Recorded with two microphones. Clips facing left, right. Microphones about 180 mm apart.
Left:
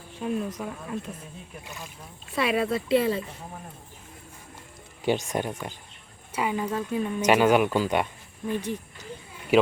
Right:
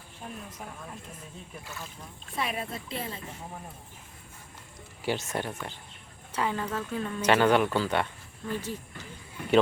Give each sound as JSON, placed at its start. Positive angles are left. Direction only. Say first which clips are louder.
{"t": 0.2, "sound": "speech", "louder": "left 12 dB", "side_deg": 90}
{"t": 1.6, "sound": "speech", "louder": "left 1 dB", "side_deg": 15}
{"t": 2.3, "sound": "speech", "louder": "left 9 dB", "side_deg": 85}
{"t": 5.0, "sound": "speech", "louder": "left 5 dB", "side_deg": 15}